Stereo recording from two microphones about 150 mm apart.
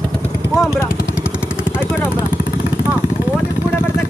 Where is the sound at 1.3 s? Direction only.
5° right (ahead or behind).